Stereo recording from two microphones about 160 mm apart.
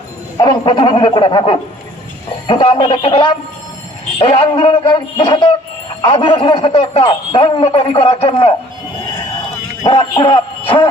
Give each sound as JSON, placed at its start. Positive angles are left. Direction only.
{"t": 0.3, "sound": "speech", "side_deg": 30}
{"t": 9.8, "sound": "music", "side_deg": 35}